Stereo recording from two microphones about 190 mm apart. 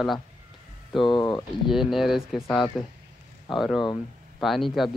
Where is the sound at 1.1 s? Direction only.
25° left (ahead or behind).